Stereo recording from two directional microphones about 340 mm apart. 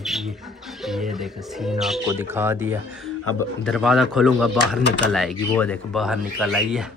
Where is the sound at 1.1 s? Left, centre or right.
Centre.